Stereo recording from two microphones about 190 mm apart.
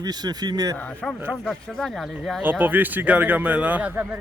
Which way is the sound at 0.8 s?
5° left (ahead or behind).